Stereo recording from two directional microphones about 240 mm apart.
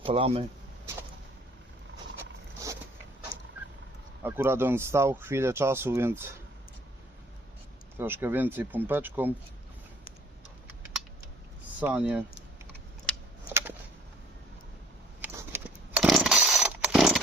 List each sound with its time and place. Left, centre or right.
0.0 s speech: right
4.2 s speech: centre
7.9 s speech: centre
11.8 s speech: centre
13.1 s typing: centre
13.5 s a sound: centre
15.2 s a sound: centre